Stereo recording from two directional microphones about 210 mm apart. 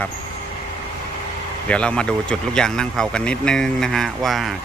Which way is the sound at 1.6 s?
5° left (ahead or behind).